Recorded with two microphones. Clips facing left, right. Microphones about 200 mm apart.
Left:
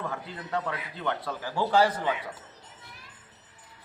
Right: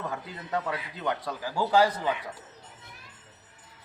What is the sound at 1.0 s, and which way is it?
Speech, 15° right (ahead or behind).